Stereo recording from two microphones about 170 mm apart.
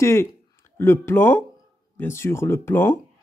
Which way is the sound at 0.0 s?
15° left (ahead or behind).